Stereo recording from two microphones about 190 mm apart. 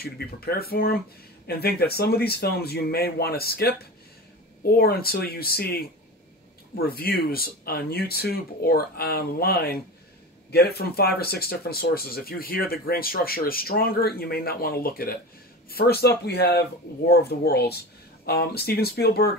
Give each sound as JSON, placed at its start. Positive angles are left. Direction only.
{"t": 0.0, "sound": "speech", "side_deg": 55}